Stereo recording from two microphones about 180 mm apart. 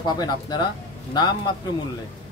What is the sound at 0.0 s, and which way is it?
Speech, 25° left (ahead or behind).